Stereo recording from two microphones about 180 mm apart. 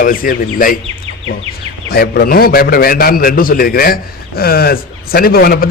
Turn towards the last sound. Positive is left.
turn(degrees=55)  # may be behind; listen again after turning